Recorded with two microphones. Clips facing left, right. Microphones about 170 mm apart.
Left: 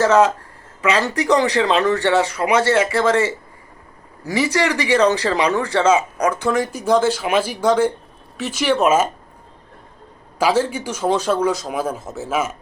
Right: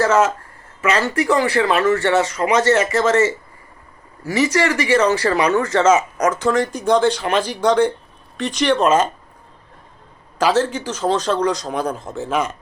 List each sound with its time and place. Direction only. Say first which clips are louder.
0.0 s speech: left 2 dB; 15° left (ahead or behind)
10.3 s speech: right 1 dB; 10° left (ahead or behind)